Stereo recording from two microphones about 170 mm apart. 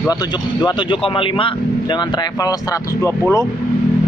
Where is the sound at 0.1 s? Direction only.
25° left (ahead or behind).